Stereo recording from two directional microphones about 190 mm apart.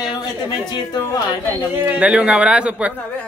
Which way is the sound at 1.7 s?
10° right (ahead or behind).